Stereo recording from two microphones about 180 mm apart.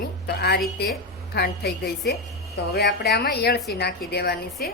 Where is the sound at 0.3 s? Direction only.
65° left (ahead or behind).